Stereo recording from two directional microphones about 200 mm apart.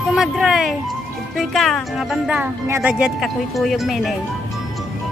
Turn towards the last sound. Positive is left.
turn(degrees=0)  # may be behind; listen again after turning